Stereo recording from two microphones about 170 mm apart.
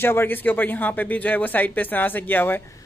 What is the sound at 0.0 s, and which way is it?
Speech, 15° left (ahead or behind).